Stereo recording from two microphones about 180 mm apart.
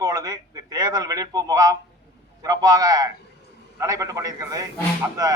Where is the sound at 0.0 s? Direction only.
20° right (ahead or behind).